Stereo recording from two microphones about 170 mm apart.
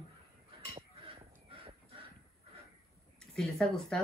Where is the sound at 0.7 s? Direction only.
35° right (ahead or behind).